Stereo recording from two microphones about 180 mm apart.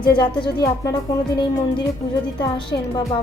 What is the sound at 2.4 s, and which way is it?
Speech, 25° left (ahead or behind).